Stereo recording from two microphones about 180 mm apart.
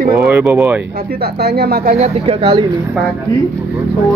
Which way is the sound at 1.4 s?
60° right (ahead or behind).